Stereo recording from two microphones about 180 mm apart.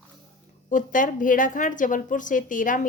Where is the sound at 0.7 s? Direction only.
45° left (ahead or behind).